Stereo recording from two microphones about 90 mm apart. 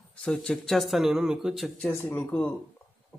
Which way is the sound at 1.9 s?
30° left (ahead or behind).